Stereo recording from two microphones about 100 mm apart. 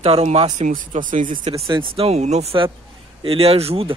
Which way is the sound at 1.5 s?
90° right.